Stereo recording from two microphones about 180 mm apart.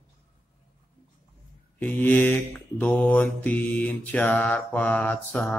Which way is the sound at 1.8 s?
10° left (ahead or behind).